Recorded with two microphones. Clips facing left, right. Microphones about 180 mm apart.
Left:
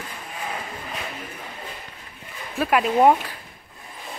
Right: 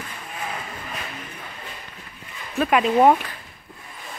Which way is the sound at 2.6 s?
5° left (ahead or behind).